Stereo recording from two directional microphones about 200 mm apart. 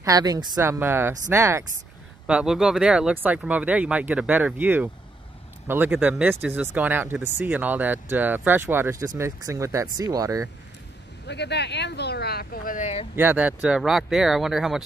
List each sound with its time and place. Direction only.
0.0 s speech: 20° right (ahead or behind)
11.2 s speech: 60° left (ahead or behind); by 13.0 s 35° left (ahead or behind)
13.1 s speech: 10° right (ahead or behind)